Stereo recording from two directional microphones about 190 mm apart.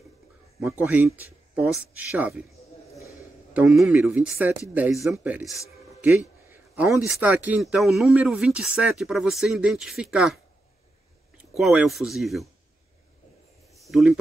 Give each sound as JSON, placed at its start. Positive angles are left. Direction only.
{"t": 0.6, "sound": "speech", "side_deg": -10}
{"t": 3.5, "sound": "speech", "side_deg": -5}
{"t": 6.0, "sound": "a sound", "side_deg": -10}
{"t": 7.1, "sound": "speech", "side_deg": -10}
{"t": 11.5, "sound": "speech", "side_deg": 0}
{"t": 13.7, "sound": "a sound", "side_deg": 0}